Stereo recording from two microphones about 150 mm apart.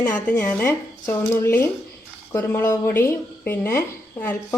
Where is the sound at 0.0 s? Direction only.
10° left (ahead or behind).